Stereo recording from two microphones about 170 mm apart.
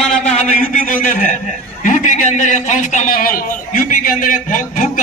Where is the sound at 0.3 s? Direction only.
45° left (ahead or behind).